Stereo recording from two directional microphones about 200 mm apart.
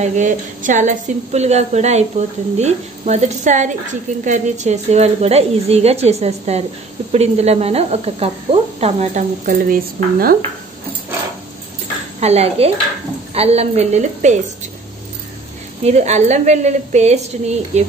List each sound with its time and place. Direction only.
0.0 s a woman's voice: 40° right (ahead or behind)
12.2 s a woman's voice: 30° right (ahead or behind)
15.8 s a woman's voice: 35° right (ahead or behind)